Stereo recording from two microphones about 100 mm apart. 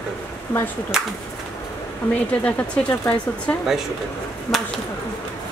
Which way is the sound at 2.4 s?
15° left (ahead or behind).